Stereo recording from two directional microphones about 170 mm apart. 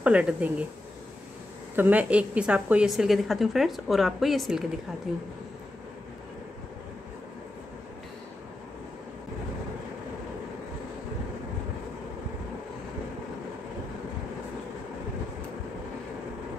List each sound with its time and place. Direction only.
0.0 s speech: 5° right (ahead or behind)
1.8 s a woman's voice: 10° right (ahead or behind)